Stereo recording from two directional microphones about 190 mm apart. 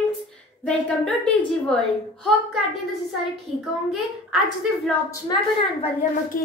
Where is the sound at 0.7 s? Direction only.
5° left (ahead or behind).